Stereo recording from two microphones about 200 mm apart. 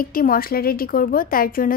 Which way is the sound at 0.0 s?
45° left (ahead or behind).